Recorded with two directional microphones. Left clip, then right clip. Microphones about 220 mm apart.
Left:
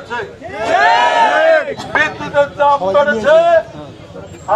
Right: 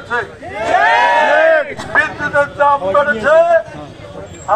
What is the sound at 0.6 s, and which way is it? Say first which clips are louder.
Crowd: even; 50° left (ahead or behind).